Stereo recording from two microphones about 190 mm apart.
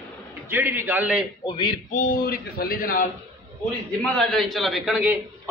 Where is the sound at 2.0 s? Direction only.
50° left (ahead or behind).